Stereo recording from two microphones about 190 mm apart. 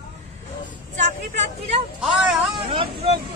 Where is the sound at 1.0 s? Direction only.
40° right (ahead or behind).